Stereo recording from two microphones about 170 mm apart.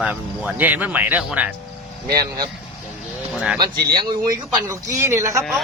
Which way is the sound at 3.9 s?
20° right (ahead or behind).